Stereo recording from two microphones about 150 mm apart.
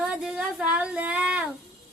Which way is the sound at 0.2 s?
5° right (ahead or behind).